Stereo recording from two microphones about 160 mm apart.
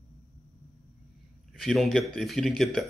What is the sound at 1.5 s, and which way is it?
Speech, centre (ahead or behind).